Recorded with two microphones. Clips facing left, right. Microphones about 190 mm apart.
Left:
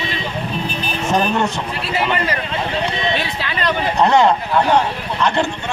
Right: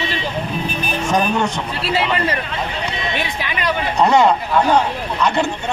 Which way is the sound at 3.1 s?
15° right (ahead or behind).